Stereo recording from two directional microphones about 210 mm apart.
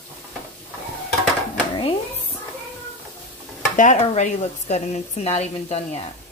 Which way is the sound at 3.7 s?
40° left (ahead or behind).